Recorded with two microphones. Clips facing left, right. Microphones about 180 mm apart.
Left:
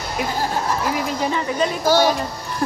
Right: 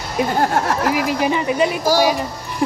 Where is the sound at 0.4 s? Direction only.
80° right.